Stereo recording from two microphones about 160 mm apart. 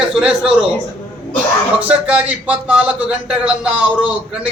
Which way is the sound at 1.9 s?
10° right (ahead or behind).